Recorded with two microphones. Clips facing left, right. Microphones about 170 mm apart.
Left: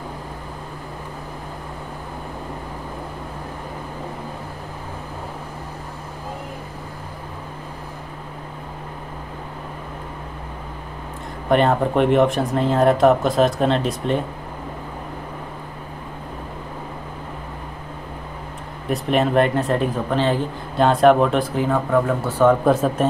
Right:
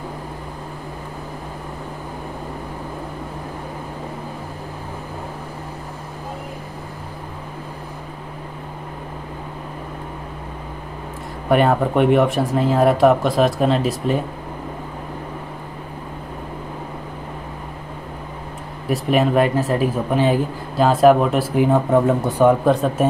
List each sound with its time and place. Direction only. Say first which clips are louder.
11.4 s speech: right 1 dB; 5° right (ahead or behind)
18.9 s speech: right 2 dB; 5° right (ahead or behind)
21.5 s speech: right 6 dB; 20° right (ahead or behind)
22.7 s speech: right 1 dB; centre (ahead or behind)